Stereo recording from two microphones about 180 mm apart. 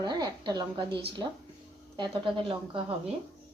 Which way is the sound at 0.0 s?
25° right (ahead or behind).